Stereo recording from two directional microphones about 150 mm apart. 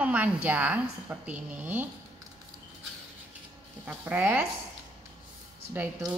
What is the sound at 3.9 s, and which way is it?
Speech, 10° right (ahead or behind).